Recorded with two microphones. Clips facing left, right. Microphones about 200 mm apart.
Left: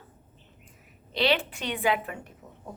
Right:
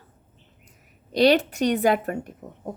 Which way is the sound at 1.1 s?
40° right (ahead or behind).